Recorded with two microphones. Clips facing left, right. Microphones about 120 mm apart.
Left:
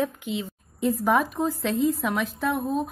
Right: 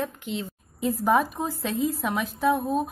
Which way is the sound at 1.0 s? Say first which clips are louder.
Right 2 dB; 5° right (ahead or behind).